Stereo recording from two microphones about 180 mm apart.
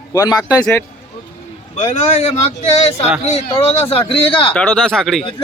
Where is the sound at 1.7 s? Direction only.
40° left (ahead or behind).